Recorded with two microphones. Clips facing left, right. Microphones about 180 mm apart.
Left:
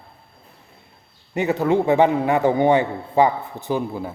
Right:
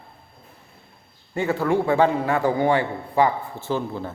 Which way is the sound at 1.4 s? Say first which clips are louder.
Left 2 dB; 20° left (ahead or behind).